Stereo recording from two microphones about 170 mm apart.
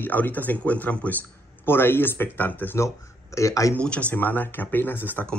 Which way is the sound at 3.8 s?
5° left (ahead or behind).